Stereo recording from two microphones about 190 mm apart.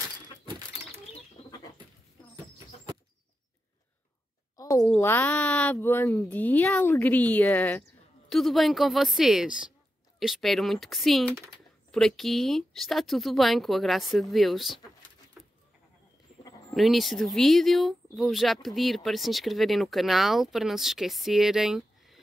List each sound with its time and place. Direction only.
4.6 s a sound: 15° left (ahead or behind)
4.9 s speech: 10° left (ahead or behind)
15.4 s goat: centre (ahead or behind)
16.7 s speech: centre (ahead or behind)